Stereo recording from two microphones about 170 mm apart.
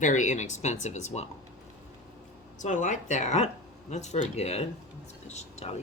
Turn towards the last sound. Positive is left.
turn(degrees=40)  # may be behind; listen again after turning